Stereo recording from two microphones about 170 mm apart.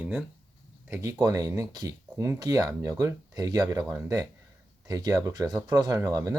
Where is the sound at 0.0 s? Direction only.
5° right (ahead or behind).